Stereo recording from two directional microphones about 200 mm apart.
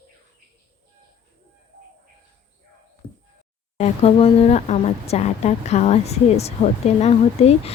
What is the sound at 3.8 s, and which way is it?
Speech, 30° left (ahead or behind).